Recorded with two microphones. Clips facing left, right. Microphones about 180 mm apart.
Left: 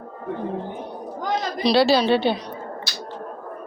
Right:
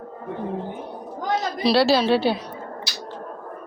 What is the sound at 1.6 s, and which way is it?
Speech, centre (ahead or behind).